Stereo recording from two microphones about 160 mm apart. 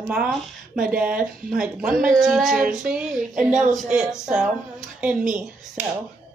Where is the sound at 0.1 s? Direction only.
5° right (ahead or behind).